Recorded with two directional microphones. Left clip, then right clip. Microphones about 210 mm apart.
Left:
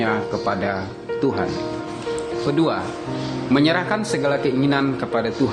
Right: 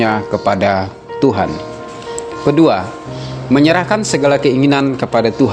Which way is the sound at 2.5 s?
35° right (ahead or behind).